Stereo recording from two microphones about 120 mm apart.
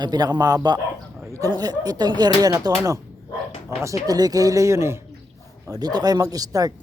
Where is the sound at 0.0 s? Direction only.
35° right (ahead or behind).